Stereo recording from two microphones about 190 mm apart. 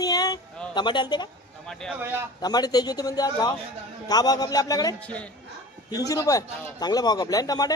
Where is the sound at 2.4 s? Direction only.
20° left (ahead or behind).